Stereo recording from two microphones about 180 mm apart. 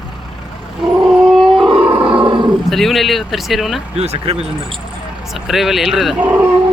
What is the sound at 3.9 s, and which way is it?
Speech, 35° right (ahead or behind).